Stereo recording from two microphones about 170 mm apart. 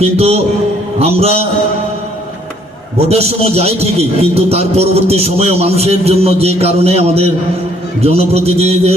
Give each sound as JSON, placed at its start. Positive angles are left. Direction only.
{"t": 0.0, "sound": "a man's voice", "side_deg": -35}
{"t": 3.1, "sound": "a man's voice", "side_deg": -35}